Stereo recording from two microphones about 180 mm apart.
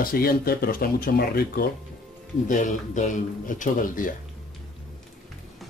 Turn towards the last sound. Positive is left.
turn(degrees=50)  # may be behind; listen again after turning